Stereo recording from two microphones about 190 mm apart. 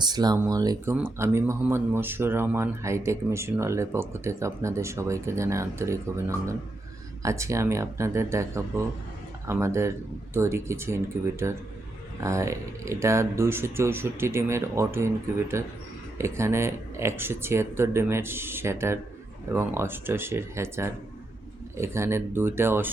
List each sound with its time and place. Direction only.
0.0 s speech: 20° right (ahead or behind)